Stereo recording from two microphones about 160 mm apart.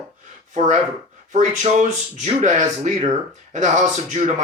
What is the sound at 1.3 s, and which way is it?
Speech, 50° right (ahead or behind).